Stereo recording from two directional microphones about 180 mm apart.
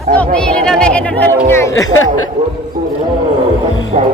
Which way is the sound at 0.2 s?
5° left (ahead or behind).